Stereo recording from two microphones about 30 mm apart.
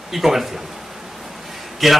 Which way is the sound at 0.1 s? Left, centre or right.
Centre.